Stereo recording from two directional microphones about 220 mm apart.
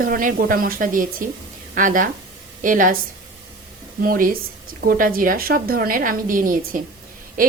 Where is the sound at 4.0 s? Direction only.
40° right (ahead or behind).